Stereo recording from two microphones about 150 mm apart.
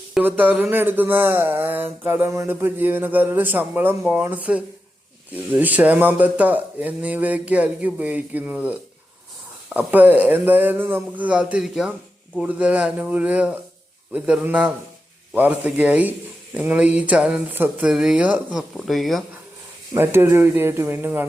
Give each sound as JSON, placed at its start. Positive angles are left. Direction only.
{"t": 0.1, "sound": "speech", "side_deg": -10}
{"t": 0.6, "sound": "mantra", "side_deg": -15}
{"t": 18.8, "sound": "speech", "side_deg": 0}
{"t": 19.9, "sound": "mantra", "side_deg": -15}